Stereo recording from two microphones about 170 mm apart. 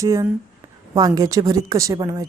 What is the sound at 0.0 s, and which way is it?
A woman's voice, 20° right (ahead or behind).